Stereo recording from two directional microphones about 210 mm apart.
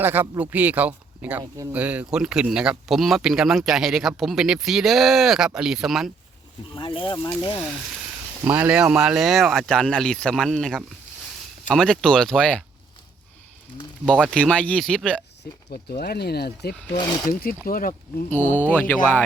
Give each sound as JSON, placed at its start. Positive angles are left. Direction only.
{"t": 0.0, "sound": "speech", "side_deg": -10}
{"t": 6.7, "sound": "speech", "side_deg": 25}
{"t": 8.4, "sound": "speech", "side_deg": -10}
{"t": 14.0, "sound": "speech", "side_deg": 5}
{"t": 15.9, "sound": "speech", "side_deg": 50}
{"t": 17.0, "sound": "speech", "side_deg": 20}
{"t": 17.2, "sound": "speech", "side_deg": 40}
{"t": 18.3, "sound": "speech", "side_deg": 10}